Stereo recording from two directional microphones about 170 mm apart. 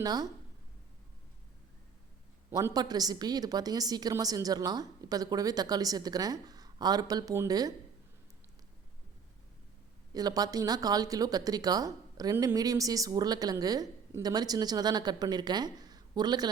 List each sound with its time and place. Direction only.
0.0 s speech: 20° right (ahead or behind)
2.5 s speech: 20° right (ahead or behind)
10.1 s speech: 20° right (ahead or behind)